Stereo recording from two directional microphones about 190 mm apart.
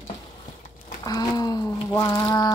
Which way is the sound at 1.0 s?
20° left (ahead or behind).